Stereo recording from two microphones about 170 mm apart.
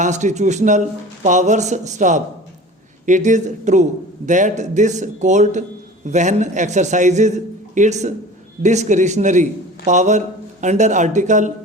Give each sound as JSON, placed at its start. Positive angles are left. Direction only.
{"t": 0.0, "sound": "a man's voice", "side_deg": -45}